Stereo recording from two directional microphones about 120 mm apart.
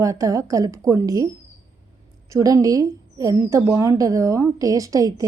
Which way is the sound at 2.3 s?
30° right (ahead or behind).